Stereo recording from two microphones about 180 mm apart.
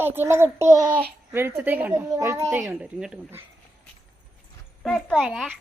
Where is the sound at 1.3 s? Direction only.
10° right (ahead or behind).